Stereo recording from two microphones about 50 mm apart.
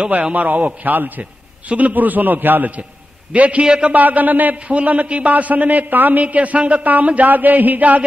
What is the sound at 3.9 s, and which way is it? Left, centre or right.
A man's voice, right.